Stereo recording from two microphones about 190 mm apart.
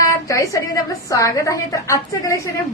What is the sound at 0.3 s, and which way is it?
A woman's voice, 15° left (ahead or behind).